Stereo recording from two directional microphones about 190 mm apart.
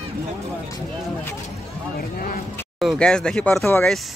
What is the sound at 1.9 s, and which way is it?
Speech, 55° left (ahead or behind).